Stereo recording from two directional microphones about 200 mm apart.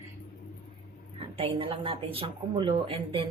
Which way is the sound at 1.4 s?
25° right (ahead or behind).